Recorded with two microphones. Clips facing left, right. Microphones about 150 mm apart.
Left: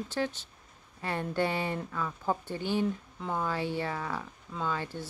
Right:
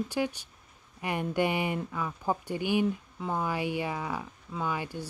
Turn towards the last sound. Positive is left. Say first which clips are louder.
# right 1 dB
turn(degrees=-15)  # may be behind; listen again after turning